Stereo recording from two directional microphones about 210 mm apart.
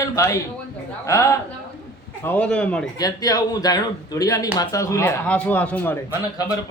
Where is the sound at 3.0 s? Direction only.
15° left (ahead or behind).